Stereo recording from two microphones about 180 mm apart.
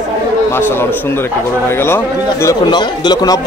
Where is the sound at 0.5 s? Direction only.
10° left (ahead or behind).